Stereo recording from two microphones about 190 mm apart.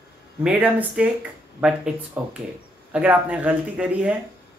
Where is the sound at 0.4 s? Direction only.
10° right (ahead or behind).